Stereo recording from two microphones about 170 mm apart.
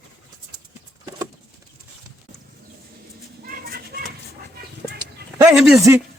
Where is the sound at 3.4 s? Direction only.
60° right (ahead or behind).